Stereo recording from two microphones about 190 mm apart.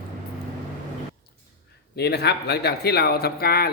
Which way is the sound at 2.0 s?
60° left (ahead or behind).